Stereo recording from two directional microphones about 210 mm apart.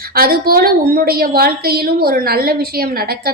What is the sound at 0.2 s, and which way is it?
A woman's voice, 45° right (ahead or behind).